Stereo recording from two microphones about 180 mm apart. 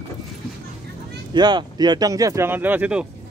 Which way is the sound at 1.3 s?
25° right (ahead or behind).